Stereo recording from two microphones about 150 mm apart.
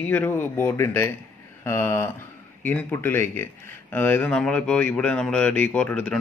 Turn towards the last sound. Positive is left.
turn(degrees=5)  # may be behind; listen again after turning